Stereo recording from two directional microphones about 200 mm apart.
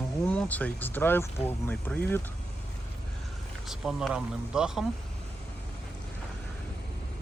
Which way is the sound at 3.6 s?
Centre (ahead or behind).